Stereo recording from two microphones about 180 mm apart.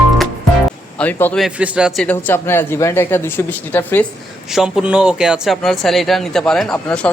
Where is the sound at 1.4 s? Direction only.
5° right (ahead or behind).